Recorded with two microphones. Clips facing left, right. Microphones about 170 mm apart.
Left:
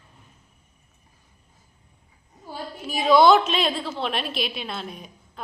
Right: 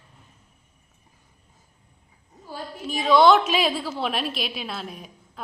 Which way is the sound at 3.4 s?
5° right (ahead or behind).